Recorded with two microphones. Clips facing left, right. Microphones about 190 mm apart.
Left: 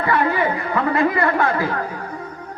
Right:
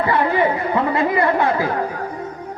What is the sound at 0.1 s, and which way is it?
Speech, 25° right (ahead or behind).